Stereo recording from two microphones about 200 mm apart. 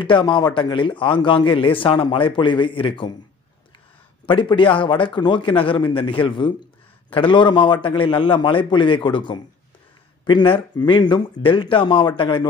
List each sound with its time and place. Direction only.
0.0 s a man's voice: 25° left (ahead or behind)
4.3 s a man's voice: 25° left (ahead or behind)